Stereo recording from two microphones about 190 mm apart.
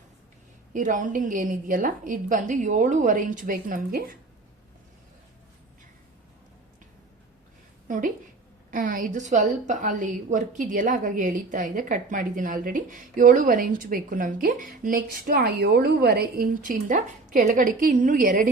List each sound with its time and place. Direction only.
0.7 s a woman's voice: 45° right (ahead or behind)
7.9 s a woman's voice: 40° right (ahead or behind)